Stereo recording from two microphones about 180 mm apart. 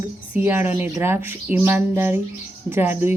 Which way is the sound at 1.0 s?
10° right (ahead or behind).